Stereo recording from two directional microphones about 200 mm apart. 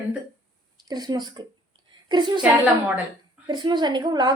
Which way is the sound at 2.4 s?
5° right (ahead or behind).